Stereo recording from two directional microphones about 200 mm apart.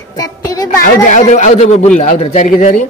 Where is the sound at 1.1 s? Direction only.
35° left (ahead or behind).